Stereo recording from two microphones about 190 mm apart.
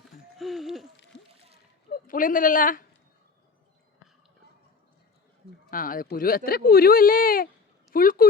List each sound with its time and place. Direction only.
0.3 s a sound: centre (ahead or behind)
1.1 s splash: 65° left (ahead or behind)
1.9 s speech: 45° left (ahead or behind)
5.7 s speech: 45° left (ahead or behind)